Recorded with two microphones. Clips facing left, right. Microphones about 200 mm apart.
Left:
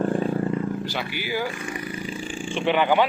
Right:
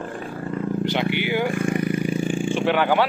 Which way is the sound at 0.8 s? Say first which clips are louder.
Right 7 dB; 20° right (ahead or behind).